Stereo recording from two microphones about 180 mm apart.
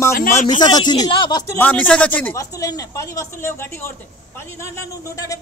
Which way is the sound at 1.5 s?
10° left (ahead or behind).